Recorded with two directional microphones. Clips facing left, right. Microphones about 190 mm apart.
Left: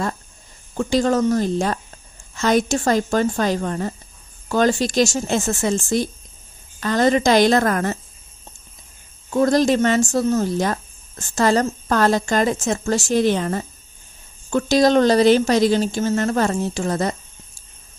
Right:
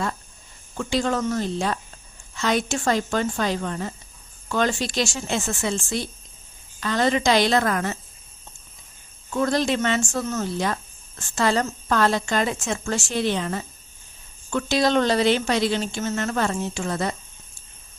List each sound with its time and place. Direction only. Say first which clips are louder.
0.8 s a woman's voice: left 6 dB; 40° left (ahead or behind)
9.3 s speech: left 6 dB; 40° left (ahead or behind)